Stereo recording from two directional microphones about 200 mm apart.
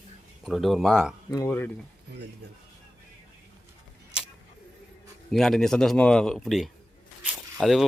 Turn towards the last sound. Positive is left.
turn(degrees=0)  # may be behind; listen again after turning